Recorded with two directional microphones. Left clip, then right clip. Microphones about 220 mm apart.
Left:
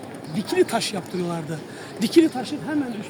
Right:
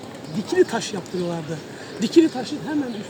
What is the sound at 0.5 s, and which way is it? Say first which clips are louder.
Speech: right 1 dB; 15° left (ahead or behind).